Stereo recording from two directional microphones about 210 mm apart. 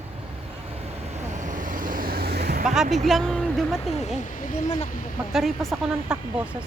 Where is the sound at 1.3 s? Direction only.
35° right (ahead or behind).